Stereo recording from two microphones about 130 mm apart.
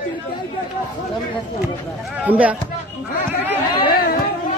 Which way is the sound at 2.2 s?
10° right (ahead or behind).